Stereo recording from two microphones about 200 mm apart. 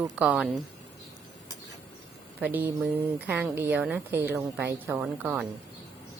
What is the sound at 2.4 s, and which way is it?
A woman's voice, 10° right (ahead or behind).